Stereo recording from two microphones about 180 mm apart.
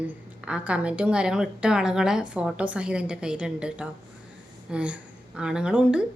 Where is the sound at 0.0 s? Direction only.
5° right (ahead or behind).